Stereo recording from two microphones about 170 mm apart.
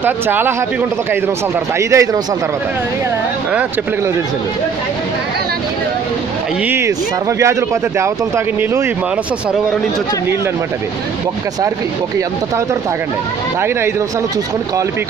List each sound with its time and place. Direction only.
0.0 s speech: 10° right (ahead or behind)
1.8 s speech: 15° right (ahead or behind)